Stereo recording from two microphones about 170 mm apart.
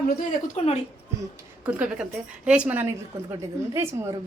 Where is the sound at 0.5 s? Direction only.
40° left (ahead or behind).